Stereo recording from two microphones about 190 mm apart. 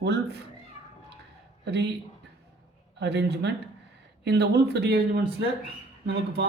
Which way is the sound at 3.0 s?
65° right (ahead or behind).